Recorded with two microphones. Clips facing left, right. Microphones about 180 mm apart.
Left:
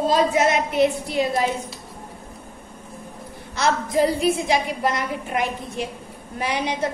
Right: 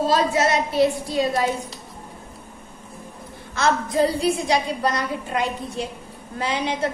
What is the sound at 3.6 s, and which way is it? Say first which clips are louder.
A woman's voice: even; 20° left (ahead or behind).